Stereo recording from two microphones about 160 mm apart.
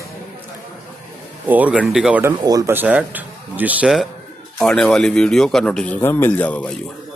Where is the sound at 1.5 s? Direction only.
10° right (ahead or behind).